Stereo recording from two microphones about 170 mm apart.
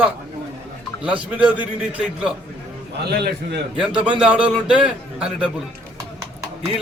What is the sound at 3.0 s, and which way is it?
Speech, 70° right (ahead or behind).